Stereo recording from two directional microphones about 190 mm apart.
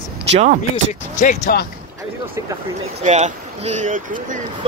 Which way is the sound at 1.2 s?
40° left (ahead or behind).